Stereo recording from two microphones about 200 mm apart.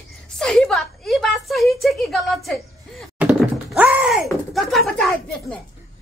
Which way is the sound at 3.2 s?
5° right (ahead or behind).